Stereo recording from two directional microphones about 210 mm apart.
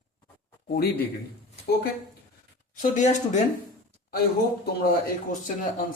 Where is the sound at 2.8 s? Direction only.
35° left (ahead or behind).